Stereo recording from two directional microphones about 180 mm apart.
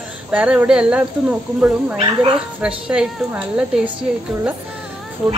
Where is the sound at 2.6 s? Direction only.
5° right (ahead or behind).